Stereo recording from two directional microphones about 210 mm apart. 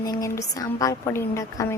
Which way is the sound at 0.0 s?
15° left (ahead or behind).